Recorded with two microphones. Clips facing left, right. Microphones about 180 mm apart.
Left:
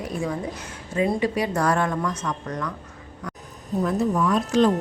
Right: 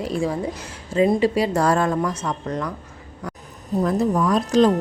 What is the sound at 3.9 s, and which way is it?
Speech, 40° right (ahead or behind).